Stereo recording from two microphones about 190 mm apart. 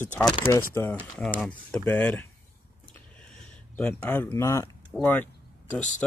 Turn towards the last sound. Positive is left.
turn(degrees=10)  # may be behind; listen again after turning